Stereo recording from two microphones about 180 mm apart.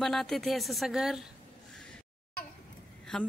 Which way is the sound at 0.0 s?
Centre (ahead or behind).